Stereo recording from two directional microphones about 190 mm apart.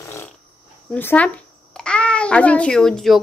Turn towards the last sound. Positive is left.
turn(degrees=0)  # may be behind; listen again after turning